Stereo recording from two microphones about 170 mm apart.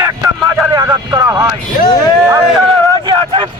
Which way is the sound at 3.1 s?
30° right (ahead or behind).